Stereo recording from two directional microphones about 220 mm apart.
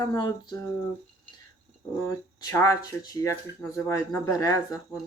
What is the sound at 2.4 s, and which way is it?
Speech, 15° left (ahead or behind).